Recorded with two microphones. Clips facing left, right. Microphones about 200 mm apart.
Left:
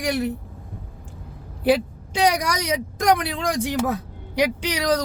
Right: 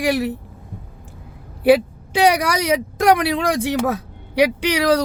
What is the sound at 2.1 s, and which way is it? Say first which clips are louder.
A man's voice: right 4 dB; 65° right (ahead or behind).